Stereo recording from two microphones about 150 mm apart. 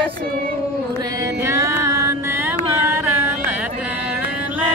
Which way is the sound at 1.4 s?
20° right (ahead or behind).